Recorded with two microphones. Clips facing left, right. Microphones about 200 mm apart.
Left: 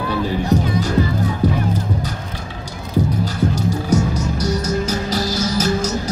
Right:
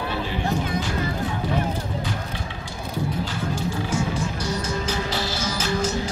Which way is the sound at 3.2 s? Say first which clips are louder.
Left 7 dB; 40° left (ahead or behind).